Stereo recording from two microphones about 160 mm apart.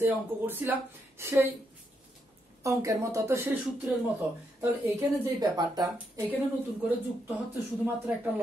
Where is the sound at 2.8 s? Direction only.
20° right (ahead or behind).